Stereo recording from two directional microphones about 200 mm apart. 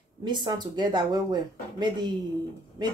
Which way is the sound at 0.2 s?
20° right (ahead or behind).